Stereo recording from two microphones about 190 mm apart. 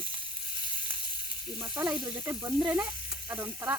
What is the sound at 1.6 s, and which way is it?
Speech, 10° right (ahead or behind).